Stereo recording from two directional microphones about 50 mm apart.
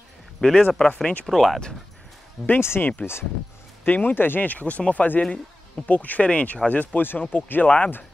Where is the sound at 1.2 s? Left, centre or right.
Centre.